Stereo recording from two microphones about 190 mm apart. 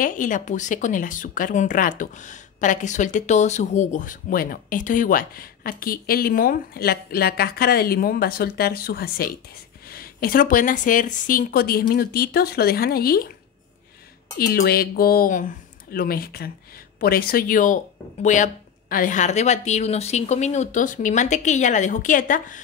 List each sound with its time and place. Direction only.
0.0 s speech: 45° left (ahead or behind)
14.4 s a woman's voice: 55° left (ahead or behind)